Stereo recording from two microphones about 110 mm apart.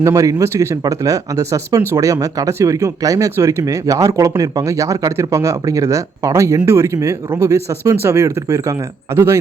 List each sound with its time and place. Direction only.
0.0 s speech: 30° right (ahead or behind)